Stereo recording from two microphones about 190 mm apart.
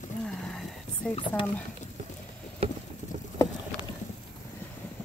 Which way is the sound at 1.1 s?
30° left (ahead or behind).